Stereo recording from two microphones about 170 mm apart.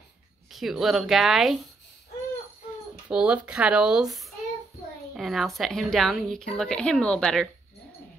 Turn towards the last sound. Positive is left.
turn(degrees=5)  # may be behind; listen again after turning